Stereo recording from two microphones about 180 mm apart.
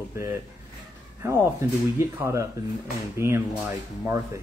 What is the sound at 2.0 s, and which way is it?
Speech, 15° right (ahead or behind).